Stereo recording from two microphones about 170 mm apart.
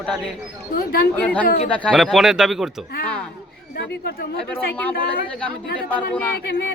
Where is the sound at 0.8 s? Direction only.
60° left (ahead or behind).